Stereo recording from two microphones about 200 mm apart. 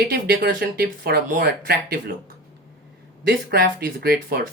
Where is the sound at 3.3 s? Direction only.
50° right (ahead or behind).